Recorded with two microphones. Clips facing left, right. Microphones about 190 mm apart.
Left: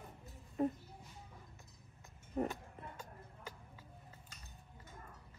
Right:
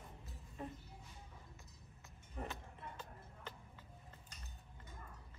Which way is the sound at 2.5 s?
10° left (ahead or behind).